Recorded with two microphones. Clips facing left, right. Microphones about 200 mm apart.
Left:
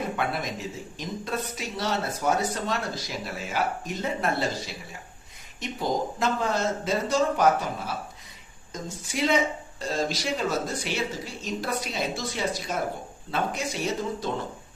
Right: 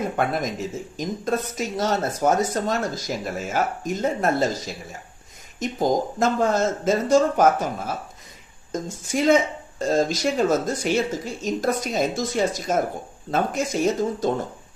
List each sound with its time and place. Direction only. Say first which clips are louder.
0.0 s speech: right 5 dB; 45° right (ahead or behind)